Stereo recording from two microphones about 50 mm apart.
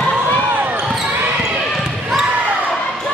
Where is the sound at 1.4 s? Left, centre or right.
Centre.